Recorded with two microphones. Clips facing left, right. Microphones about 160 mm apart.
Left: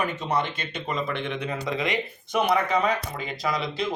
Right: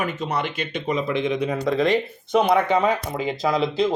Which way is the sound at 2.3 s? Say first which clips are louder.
Right 5 dB; 25° right (ahead or behind).